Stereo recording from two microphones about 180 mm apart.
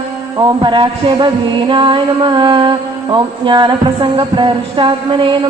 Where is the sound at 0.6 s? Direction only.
25° right (ahead or behind).